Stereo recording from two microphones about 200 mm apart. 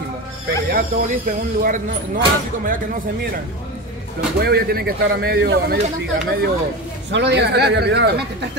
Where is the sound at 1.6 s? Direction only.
45° right (ahead or behind).